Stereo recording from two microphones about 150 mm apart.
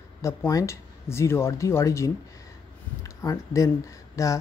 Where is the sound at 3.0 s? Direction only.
20° left (ahead or behind).